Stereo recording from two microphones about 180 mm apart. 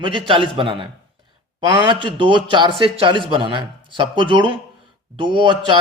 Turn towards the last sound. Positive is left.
turn(degrees=-25)  # may be behind; listen again after turning